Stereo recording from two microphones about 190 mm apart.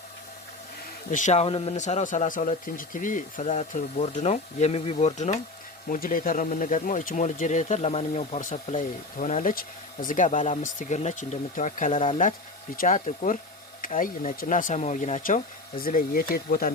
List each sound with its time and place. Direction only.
1.1 s speech: 40° left (ahead or behind)